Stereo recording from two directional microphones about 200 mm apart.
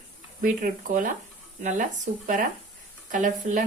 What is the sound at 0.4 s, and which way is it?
Speech, 40° right (ahead or behind).